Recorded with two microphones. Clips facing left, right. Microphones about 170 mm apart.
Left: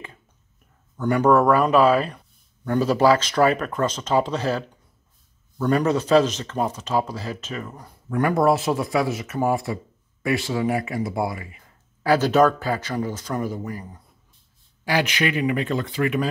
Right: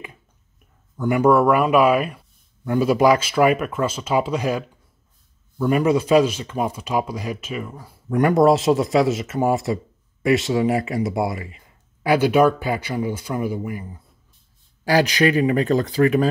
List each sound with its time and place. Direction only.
0.9 s speech: 10° right (ahead or behind)
8.1 s speech: 20° right (ahead or behind)
14.9 s speech: 40° right (ahead or behind)